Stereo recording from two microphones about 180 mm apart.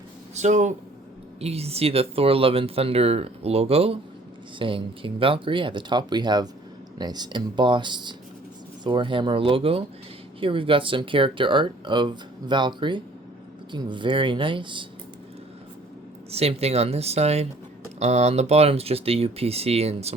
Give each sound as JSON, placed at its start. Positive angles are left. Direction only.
{"t": 0.3, "sound": "speech", "side_deg": -40}
{"t": 16.3, "sound": "speech", "side_deg": -35}